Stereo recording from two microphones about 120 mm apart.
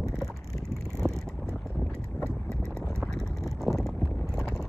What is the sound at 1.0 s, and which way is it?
Vehicle, 20° right (ahead or behind).